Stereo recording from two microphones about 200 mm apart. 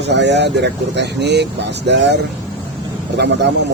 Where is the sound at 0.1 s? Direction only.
60° right (ahead or behind).